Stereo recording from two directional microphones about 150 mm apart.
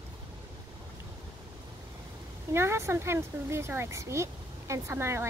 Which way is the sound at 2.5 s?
15° right (ahead or behind).